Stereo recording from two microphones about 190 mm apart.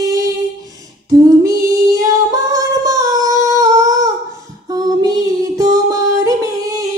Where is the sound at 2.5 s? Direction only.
15° right (ahead or behind).